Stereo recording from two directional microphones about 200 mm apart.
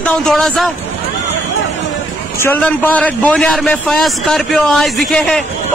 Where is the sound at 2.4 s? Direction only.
10° left (ahead or behind).